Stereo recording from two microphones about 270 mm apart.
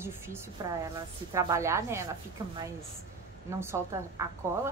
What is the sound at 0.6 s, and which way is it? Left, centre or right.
A woman's voice, centre.